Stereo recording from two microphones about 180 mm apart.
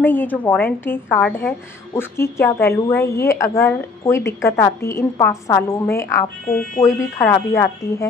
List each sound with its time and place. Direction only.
0.0 s a woman's voice: 10° left (ahead or behind)